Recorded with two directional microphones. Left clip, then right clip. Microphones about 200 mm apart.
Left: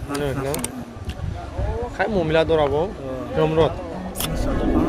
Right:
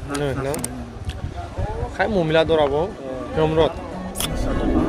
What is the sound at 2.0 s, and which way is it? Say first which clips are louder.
Speech: right 1 dB; 10° right (ahead or behind).